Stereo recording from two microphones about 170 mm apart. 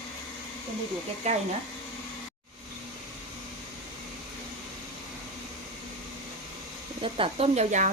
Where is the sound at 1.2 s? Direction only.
40° right (ahead or behind).